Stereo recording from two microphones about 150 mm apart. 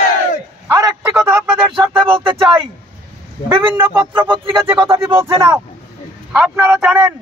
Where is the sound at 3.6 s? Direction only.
15° right (ahead or behind).